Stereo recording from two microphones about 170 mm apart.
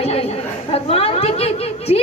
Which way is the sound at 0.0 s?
35° left (ahead or behind).